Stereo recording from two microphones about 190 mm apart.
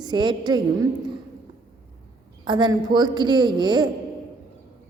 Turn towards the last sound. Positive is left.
turn(degrees=-25)  # may be behind; listen again after turning